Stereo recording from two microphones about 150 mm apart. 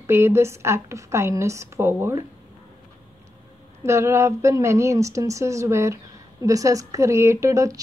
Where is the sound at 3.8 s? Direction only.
20° right (ahead or behind).